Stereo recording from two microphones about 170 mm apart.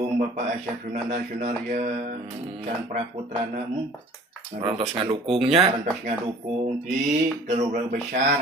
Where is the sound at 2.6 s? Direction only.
40° right (ahead or behind).